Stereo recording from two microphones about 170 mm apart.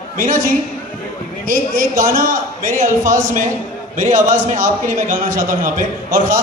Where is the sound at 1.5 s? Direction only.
55° right (ahead or behind).